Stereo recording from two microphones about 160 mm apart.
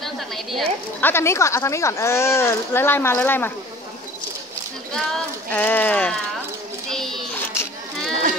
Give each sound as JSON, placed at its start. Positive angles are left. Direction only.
{"t": 0.0, "sound": "a woman's voice", "side_deg": 0}
{"t": 1.0, "sound": "speech", "side_deg": 15}
{"t": 4.9, "sound": "speech", "side_deg": 5}
{"t": 6.9, "sound": "child singing", "side_deg": 0}